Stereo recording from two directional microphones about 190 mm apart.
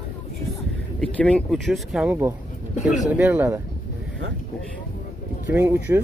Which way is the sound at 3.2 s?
10° right (ahead or behind).